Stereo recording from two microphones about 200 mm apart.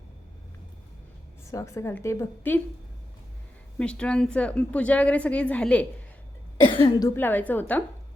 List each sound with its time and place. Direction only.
1.5 s a woman's voice: 15° left (ahead or behind)
3.8 s a woman's voice: 5° left (ahead or behind)
6.7 s speech: 25° left (ahead or behind)
7.2 s a woman's voice: 10° left (ahead or behind)